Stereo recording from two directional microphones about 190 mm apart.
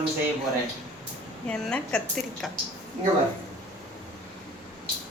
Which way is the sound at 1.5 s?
5° left (ahead or behind).